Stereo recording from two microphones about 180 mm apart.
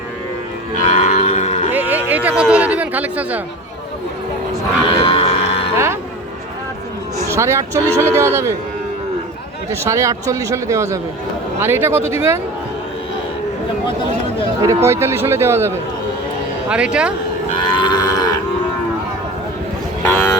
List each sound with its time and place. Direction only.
0.9 s livestock: 40° left (ahead or behind)
1.7 s a sound: 10° right (ahead or behind)
4.9 s music: 30° left (ahead or behind)
5.7 s speech: 15° right (ahead or behind)
7.3 s speech: 15° right (ahead or behind)
9.8 s speech: 15° right (ahead or behind)
14.8 s speech: 15° right (ahead or behind)
17.7 s livestock: 25° left (ahead or behind)
20.0 s a sound: 10° left (ahead or behind)